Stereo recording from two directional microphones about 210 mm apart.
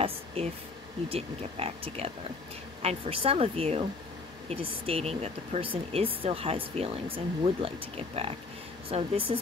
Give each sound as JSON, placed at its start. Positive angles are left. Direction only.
{"t": 0.4, "sound": "speech", "side_deg": -25}